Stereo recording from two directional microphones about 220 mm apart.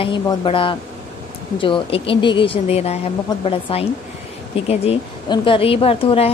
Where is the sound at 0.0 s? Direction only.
20° left (ahead or behind).